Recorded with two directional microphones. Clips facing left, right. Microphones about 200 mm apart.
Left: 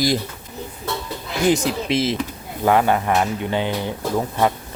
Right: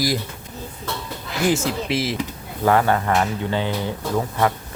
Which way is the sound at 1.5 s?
20° left (ahead or behind).